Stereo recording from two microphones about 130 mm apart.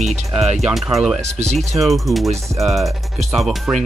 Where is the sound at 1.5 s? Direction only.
Centre (ahead or behind).